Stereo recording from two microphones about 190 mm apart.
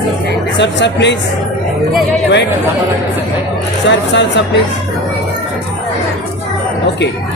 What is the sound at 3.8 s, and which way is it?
Speech, 70° left (ahead or behind).